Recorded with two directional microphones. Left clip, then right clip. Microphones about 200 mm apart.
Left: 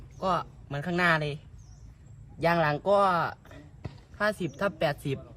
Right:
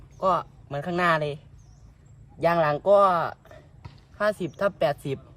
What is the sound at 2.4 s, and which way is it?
A woman's voice, 20° right (ahead or behind).